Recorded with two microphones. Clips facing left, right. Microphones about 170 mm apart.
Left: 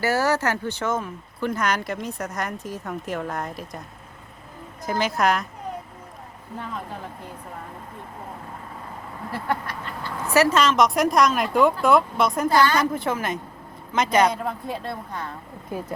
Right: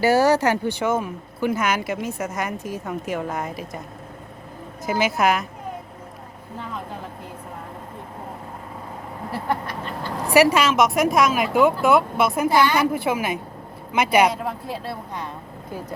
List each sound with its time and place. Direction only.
0.0 s speech: 15° right (ahead or behind); by 3.8 s centre (ahead or behind)
4.9 s speech: 5° right (ahead or behind)
9.3 s a sound: 20° right (ahead or behind)
10.3 s speech: 10° right (ahead or behind)